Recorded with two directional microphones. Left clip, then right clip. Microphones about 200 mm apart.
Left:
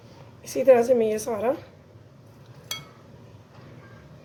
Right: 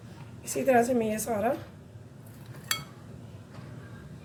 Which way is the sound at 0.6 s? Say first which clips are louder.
Left 7 dB; 35° left (ahead or behind).